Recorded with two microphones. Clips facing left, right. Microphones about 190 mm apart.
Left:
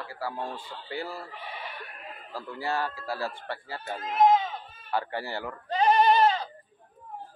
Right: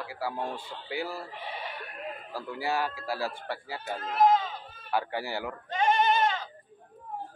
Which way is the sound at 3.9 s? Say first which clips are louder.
Left 2 dB; 20° left (ahead or behind).